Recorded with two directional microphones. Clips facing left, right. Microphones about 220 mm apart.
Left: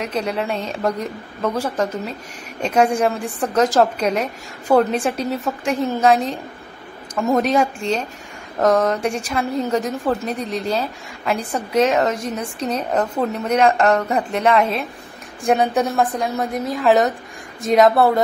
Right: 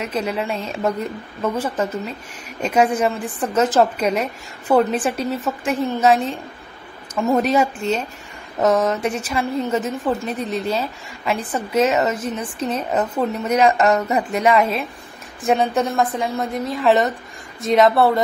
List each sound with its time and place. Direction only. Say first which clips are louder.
0.0 s a woman's voice: even; 5° right (ahead or behind)